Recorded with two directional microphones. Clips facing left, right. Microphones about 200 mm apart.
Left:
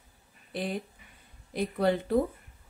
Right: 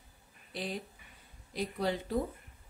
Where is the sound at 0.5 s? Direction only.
55° left (ahead or behind).